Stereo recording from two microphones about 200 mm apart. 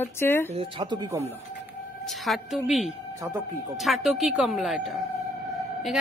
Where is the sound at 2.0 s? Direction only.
Centre (ahead or behind).